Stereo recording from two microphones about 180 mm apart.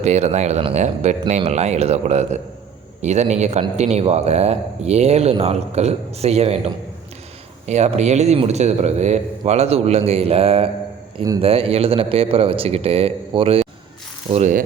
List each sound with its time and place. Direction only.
0.0 s speech: 40° right (ahead or behind)